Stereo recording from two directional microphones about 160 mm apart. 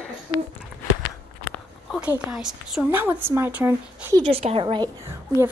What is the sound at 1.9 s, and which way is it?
A woman's voice, 5° right (ahead or behind).